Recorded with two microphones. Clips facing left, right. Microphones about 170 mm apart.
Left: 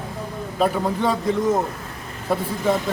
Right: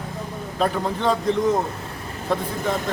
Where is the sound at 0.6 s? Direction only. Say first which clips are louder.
Left 2 dB; 5° left (ahead or behind).